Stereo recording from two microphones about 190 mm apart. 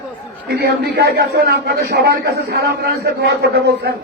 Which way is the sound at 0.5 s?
60° right (ahead or behind).